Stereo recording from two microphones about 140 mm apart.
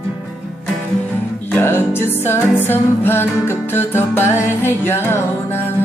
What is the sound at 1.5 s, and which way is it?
Music, 15° left (ahead or behind).